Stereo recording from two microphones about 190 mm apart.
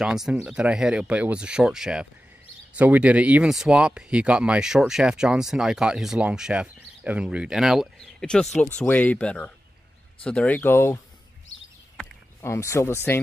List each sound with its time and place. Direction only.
0.0 s speech: 5° right (ahead or behind)
12.4 s speech: 15° left (ahead or behind)